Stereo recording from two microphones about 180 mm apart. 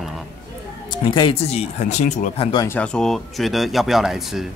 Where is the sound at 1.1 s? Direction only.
30° left (ahead or behind).